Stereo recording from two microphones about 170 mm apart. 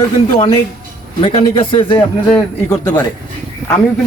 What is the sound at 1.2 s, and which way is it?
Speech, 35° left (ahead or behind).